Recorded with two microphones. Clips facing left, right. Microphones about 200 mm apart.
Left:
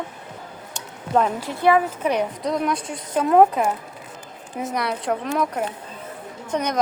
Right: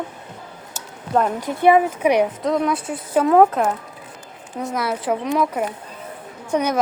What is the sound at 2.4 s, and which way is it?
Speech, centre (ahead or behind).